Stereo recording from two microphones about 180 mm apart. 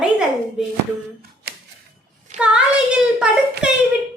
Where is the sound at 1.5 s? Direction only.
70° right (ahead or behind).